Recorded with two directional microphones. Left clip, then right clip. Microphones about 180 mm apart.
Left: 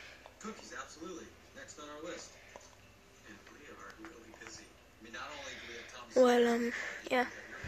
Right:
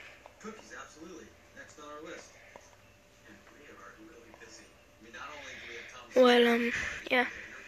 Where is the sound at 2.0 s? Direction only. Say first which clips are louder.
Left 1 dB; 10° right (ahead or behind).